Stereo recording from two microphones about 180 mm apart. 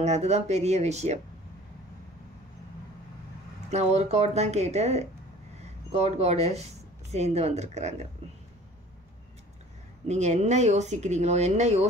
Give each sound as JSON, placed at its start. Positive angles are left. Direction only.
{"t": 0.0, "sound": "speech", "side_deg": -40}
{"t": 3.7, "sound": "speech", "side_deg": -35}
{"t": 10.0, "sound": "speech", "side_deg": -40}